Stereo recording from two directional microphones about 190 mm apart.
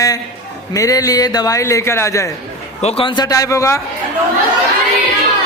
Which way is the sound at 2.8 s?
30° left (ahead or behind).